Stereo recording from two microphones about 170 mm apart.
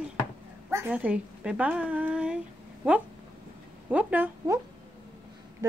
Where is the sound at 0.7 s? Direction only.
10° right (ahead or behind).